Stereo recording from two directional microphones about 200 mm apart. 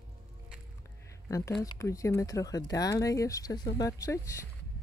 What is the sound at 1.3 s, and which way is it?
Speech, 15° left (ahead or behind).